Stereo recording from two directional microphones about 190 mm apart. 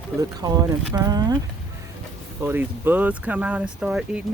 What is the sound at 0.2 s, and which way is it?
Speech, 20° right (ahead or behind).